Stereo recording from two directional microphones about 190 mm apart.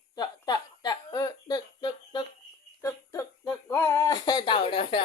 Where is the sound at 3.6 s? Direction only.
15° left (ahead or behind).